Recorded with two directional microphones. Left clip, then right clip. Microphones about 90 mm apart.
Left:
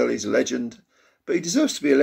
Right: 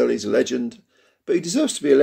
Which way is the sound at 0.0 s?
30° right (ahead or behind).